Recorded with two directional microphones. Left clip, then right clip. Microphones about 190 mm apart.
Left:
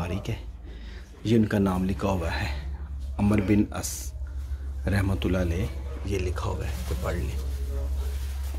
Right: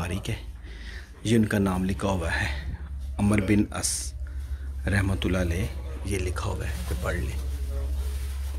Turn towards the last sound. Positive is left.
turn(degrees=0)  # may be behind; listen again after turning